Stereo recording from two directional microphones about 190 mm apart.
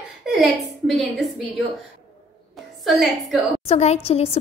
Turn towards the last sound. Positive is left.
turn(degrees=30)  # may be behind; listen again after turning